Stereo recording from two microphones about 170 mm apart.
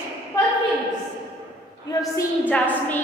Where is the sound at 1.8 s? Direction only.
20° left (ahead or behind).